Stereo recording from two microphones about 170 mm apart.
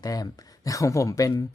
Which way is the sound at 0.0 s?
20° left (ahead or behind).